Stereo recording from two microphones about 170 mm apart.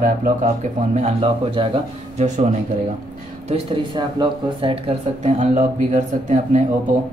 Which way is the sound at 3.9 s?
25° right (ahead or behind).